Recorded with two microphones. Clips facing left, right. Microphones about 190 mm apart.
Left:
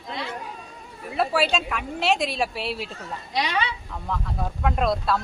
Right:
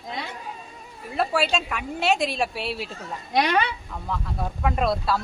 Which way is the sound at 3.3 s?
55° right (ahead or behind).